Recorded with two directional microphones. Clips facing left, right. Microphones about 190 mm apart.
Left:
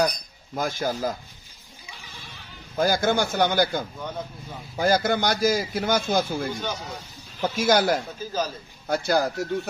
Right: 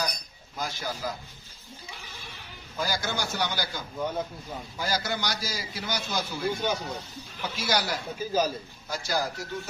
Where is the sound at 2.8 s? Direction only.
50° left (ahead or behind).